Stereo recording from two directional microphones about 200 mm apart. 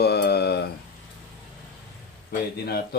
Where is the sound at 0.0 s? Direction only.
55° left (ahead or behind).